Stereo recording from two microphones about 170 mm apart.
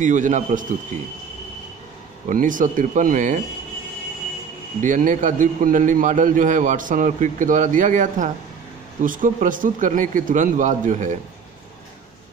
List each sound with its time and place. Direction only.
0.0 s a man's voice: 50° right (ahead or behind)
2.2 s a man's voice: 50° right (ahead or behind)
4.8 s a man's voice: 50° right (ahead or behind)